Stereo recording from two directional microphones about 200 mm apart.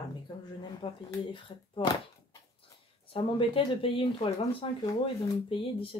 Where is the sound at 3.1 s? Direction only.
25° left (ahead or behind).